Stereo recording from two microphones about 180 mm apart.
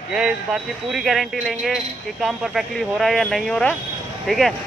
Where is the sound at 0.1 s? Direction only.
5° right (ahead or behind).